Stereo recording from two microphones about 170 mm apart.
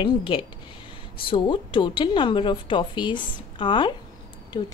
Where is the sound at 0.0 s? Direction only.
30° left (ahead or behind).